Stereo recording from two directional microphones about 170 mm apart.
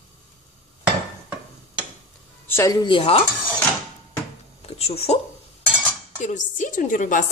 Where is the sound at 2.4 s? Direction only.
15° left (ahead or behind); by 3.2 s 35° left (ahead or behind).